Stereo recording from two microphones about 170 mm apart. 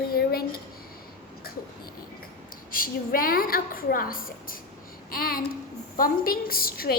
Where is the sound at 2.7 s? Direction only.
60° left (ahead or behind).